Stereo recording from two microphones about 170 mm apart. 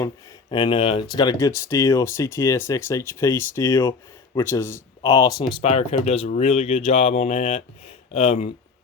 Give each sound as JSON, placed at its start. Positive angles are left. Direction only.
{"t": 0.5, "sound": "speech", "side_deg": 30}